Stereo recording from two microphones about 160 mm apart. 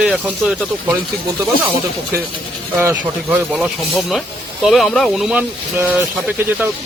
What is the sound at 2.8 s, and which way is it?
Speech, 15° right (ahead or behind).